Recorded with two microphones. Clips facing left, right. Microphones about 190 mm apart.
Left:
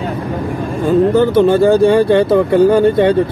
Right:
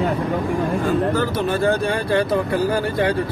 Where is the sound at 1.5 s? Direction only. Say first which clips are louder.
Left 10 dB; 30° left (ahead or behind).